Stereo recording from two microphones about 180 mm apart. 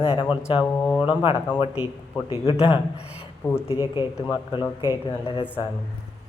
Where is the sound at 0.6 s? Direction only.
10° left (ahead or behind).